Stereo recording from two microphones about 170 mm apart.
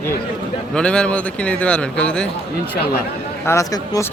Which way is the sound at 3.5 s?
20° left (ahead or behind).